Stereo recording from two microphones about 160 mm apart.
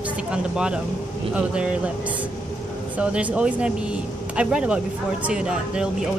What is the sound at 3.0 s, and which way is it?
Speech, 10° right (ahead or behind).